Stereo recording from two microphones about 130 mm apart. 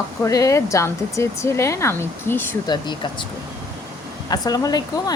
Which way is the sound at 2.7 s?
35° left (ahead or behind).